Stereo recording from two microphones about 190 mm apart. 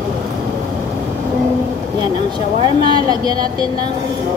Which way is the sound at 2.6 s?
20° right (ahead or behind).